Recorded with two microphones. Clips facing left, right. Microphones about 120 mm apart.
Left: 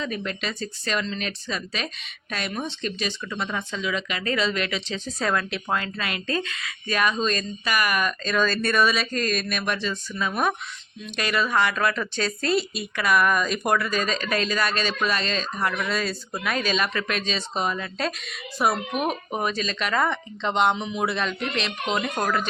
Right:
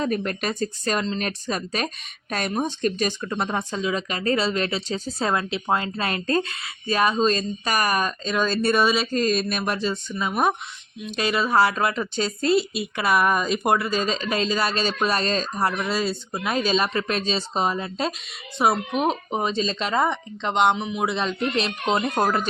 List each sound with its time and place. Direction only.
0.0 s speech: 45° right (ahead or behind)
1.5 s speech: 45° right (ahead or behind)
5.2 s speech: 25° right (ahead or behind)
21.2 s speech: 30° right (ahead or behind)